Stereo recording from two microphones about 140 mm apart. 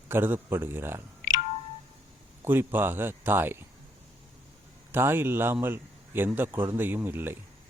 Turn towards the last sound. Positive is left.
turn(degrees=-15)  # may be behind; listen again after turning